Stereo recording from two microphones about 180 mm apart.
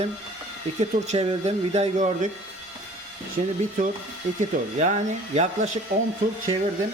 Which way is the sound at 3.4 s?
40° right (ahead or behind).